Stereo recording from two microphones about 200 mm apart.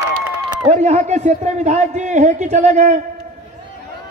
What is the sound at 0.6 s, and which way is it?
A man's voice, 35° right (ahead or behind).